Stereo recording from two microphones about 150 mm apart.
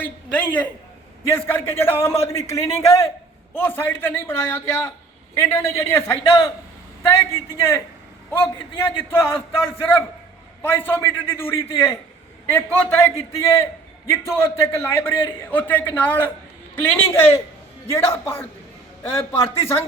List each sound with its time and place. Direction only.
0.0 s a man's voice: 10° left (ahead or behind)
10.6 s a man's voice: 15° left (ahead or behind)